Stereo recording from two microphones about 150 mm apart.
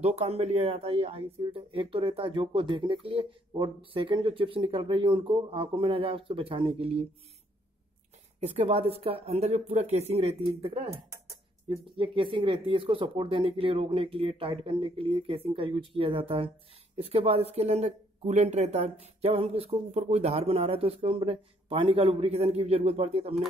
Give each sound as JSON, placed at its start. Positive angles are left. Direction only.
{"t": 0.0, "sound": "speech", "side_deg": -45}
{"t": 8.4, "sound": "speech", "side_deg": -40}